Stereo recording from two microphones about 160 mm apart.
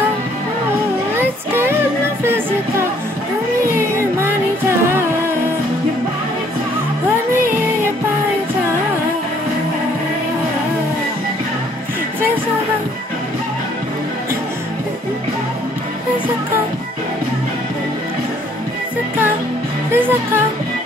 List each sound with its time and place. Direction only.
1.1 s child singing: 15° right (ahead or behind)
4.0 s music: 15° right (ahead or behind)
19.9 s music: 15° right (ahead or behind)